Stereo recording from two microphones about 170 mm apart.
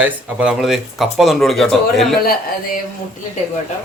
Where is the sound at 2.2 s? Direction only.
60° left (ahead or behind).